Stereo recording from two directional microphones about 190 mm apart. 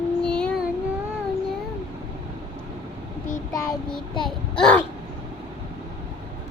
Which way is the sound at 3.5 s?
20° left (ahead or behind).